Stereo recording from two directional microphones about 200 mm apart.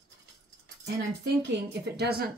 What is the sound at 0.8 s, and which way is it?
Speech, 55° right (ahead or behind).